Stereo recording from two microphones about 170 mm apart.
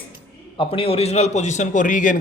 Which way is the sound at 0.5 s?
30° left (ahead or behind).